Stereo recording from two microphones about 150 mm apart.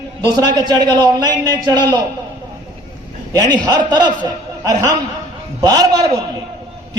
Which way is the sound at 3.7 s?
30° right (ahead or behind).